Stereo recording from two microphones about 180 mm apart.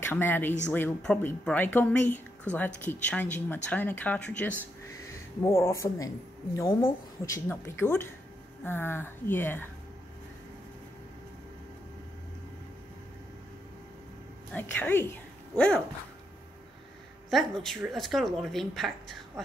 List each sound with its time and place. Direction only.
0.0 s speech: 10° left (ahead or behind)
14.5 s speech: 10° left (ahead or behind)
17.3 s speech: centre (ahead or behind)